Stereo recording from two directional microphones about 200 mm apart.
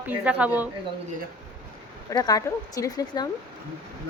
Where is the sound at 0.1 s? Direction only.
5° right (ahead or behind).